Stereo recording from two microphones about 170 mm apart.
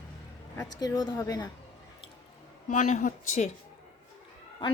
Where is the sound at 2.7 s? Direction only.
45° left (ahead or behind).